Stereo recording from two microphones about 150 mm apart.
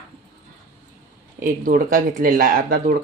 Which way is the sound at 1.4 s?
65° right (ahead or behind).